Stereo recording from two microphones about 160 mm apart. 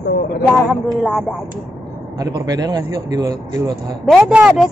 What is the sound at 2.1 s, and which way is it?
Speech, 25° right (ahead or behind).